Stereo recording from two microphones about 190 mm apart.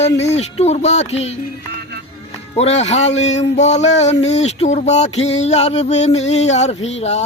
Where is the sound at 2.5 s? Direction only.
35° left (ahead or behind).